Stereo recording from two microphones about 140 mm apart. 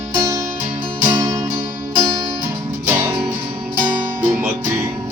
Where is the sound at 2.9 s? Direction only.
10° right (ahead or behind).